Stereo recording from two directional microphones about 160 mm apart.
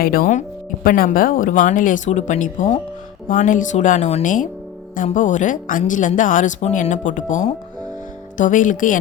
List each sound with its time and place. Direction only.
0.0 s speech: 65° left (ahead or behind)